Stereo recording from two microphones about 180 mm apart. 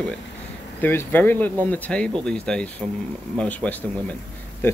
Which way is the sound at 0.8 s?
10° left (ahead or behind).